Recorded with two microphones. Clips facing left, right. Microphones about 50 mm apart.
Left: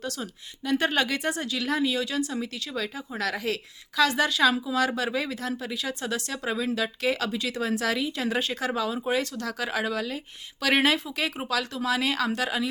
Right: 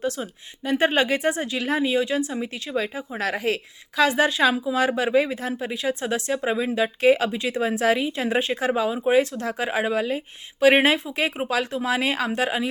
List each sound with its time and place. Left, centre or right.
0.0 s speech: right